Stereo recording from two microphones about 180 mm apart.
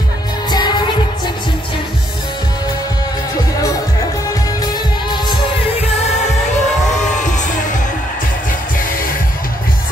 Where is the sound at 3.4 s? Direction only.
20° left (ahead or behind).